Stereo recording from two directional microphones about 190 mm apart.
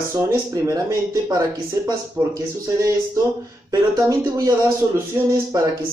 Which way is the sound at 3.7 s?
20° right (ahead or behind).